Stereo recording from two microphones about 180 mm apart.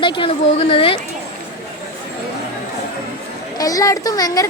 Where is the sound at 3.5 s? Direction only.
20° left (ahead or behind).